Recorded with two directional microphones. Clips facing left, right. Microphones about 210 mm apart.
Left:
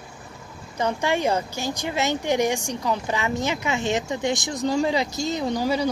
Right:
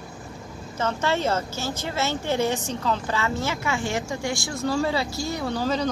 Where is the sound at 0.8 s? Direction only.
15° left (ahead or behind).